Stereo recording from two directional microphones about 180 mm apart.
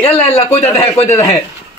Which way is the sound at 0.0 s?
35° left (ahead or behind).